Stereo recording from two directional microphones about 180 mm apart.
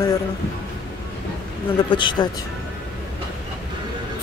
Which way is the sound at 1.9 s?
25° left (ahead or behind).